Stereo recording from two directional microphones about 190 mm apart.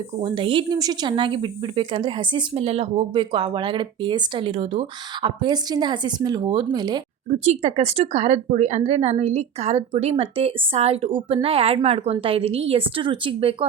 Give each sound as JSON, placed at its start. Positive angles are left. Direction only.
{"t": 0.2, "sound": "speech", "side_deg": -25}
{"t": 7.3, "sound": "a woman's voice", "side_deg": -35}